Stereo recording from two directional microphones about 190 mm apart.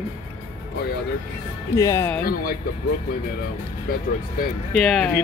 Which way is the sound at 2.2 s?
50° left (ahead or behind).